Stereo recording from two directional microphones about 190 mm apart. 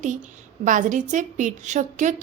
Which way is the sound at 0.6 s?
45° right (ahead or behind).